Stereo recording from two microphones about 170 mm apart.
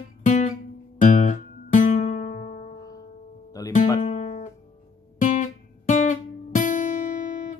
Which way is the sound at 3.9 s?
45° left (ahead or behind).